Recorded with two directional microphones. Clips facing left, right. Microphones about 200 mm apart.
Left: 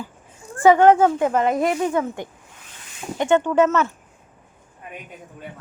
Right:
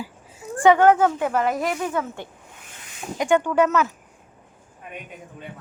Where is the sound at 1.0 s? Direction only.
25° left (ahead or behind).